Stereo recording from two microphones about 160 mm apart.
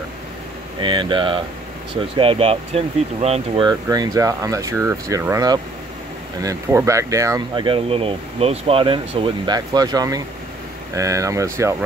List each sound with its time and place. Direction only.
0.7 s speech: 30° right (ahead or behind)
3.6 s speech: 25° right (ahead or behind)